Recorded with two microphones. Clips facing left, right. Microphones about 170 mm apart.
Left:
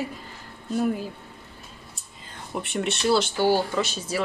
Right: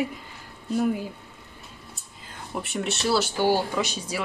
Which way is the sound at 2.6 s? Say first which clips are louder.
Left 3 dB; centre (ahead or behind).